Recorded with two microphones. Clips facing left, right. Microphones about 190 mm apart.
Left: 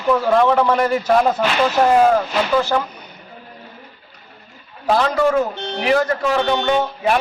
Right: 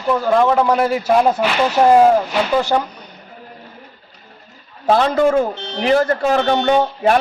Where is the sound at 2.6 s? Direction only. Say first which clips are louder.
Right 2 dB; 15° right (ahead or behind).